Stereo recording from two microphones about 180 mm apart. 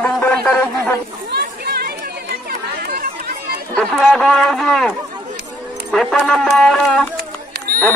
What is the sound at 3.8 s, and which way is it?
Speech, 5° left (ahead or behind).